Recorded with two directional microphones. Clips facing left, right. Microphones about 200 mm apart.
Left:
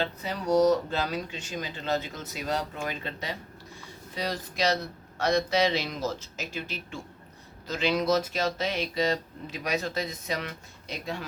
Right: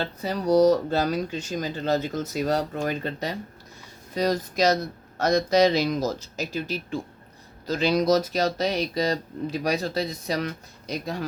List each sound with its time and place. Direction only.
0.0 s speech: 40° right (ahead or behind)